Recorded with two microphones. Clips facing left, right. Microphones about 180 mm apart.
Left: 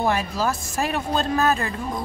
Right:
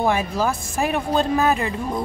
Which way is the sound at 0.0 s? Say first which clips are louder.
Right 2 dB; 15° right (ahead or behind).